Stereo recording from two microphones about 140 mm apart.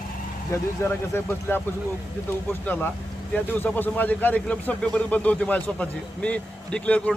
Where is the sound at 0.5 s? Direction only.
15° left (ahead or behind).